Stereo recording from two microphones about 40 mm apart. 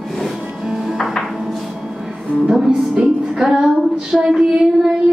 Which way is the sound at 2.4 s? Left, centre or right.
Centre.